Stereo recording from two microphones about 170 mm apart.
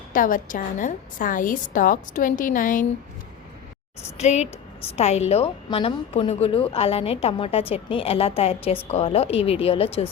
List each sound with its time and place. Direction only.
0.1 s a woman's voice: 50° left (ahead or behind)
4.2 s a woman's voice: 40° left (ahead or behind)